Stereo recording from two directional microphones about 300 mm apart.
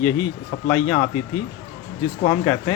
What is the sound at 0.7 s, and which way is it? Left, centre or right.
Speech, centre.